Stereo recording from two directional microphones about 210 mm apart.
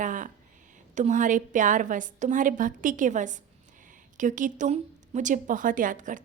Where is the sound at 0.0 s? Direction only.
40° right (ahead or behind).